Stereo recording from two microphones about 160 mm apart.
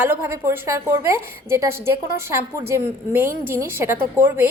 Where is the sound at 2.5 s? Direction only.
15° right (ahead or behind).